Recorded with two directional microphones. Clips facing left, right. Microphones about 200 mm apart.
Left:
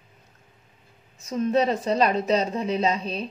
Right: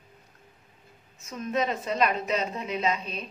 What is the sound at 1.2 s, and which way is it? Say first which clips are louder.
A woman's voice: left 7 dB; 35° left (ahead or behind).